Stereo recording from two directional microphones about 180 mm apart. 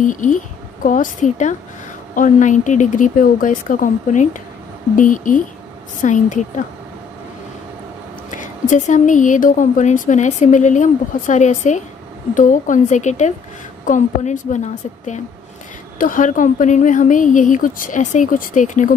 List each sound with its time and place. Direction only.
0.0 s a woman's voice: 45° left (ahead or behind)
8.3 s a woman's voice: 45° left (ahead or behind)